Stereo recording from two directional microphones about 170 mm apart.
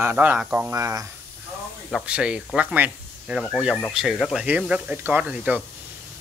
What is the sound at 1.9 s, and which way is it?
Speech, 5° right (ahead or behind).